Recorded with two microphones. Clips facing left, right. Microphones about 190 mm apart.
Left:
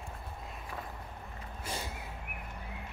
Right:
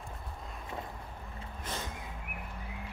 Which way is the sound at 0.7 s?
25° right (ahead or behind).